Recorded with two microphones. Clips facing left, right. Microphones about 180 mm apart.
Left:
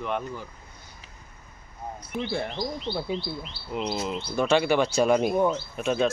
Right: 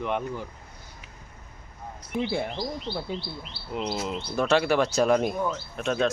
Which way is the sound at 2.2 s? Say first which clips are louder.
Right 1 dB; 10° right (ahead or behind).